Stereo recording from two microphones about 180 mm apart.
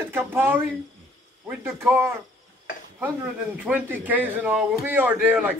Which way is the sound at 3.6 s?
10° right (ahead or behind).